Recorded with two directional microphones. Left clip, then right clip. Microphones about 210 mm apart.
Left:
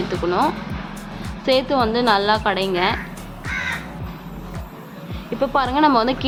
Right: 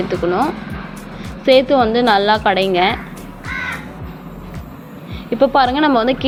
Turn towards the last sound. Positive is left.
turn(degrees=-5)  # may be behind; listen again after turning